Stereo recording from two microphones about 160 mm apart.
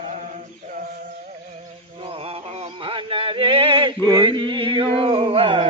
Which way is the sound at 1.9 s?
35° right (ahead or behind).